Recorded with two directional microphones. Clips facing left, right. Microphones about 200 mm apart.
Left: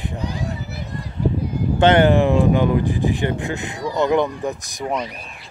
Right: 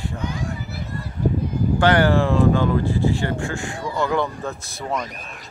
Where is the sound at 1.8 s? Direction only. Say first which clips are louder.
Left 4 dB; 20° left (ahead or behind).